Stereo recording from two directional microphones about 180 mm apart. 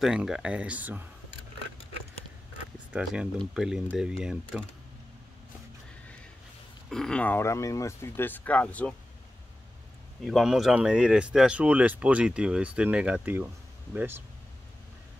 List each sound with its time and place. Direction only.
0.0 s speech: 5° right (ahead or behind)
2.9 s speech: 5° right (ahead or behind)
6.9 s speech: 5° left (ahead or behind)
10.2 s speech: centre (ahead or behind)